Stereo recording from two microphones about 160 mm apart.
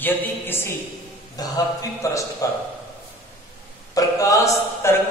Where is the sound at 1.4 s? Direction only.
25° left (ahead or behind).